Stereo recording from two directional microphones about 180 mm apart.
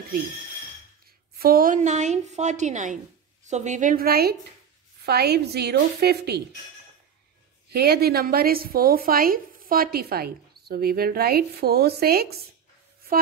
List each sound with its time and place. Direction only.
1.4 s a woman's voice: 55° right (ahead or behind)
7.7 s a woman's voice: 60° right (ahead or behind)